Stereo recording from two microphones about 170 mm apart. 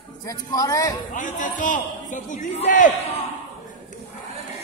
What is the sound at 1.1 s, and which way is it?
A man's voice, 50° left (ahead or behind).